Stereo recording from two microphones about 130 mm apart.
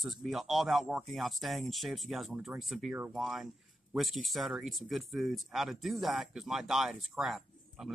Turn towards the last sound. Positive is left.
turn(degrees=0)  # may be behind; listen again after turning